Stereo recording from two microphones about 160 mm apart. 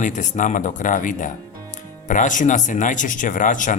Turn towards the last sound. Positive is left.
turn(degrees=55)  # may be behind; listen again after turning